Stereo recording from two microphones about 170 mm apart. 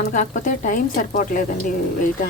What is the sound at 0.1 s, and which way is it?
A woman's voice, 50° left (ahead or behind).